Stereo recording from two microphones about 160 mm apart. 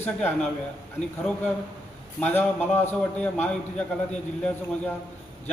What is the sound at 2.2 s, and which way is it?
A man's voice, 10° left (ahead or behind).